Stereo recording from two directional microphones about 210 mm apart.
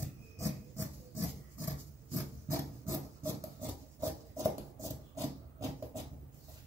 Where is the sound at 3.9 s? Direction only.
15° right (ahead or behind).